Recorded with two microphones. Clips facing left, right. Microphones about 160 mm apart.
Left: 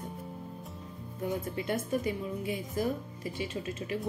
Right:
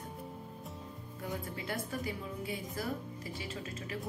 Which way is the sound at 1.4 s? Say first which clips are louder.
Left 6 dB; 20° left (ahead or behind).